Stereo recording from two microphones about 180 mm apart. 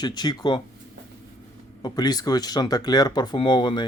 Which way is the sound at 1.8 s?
20° left (ahead or behind).